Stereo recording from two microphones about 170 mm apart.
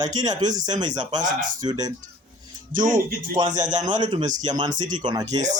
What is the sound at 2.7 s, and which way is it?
Speech, 50° right (ahead or behind).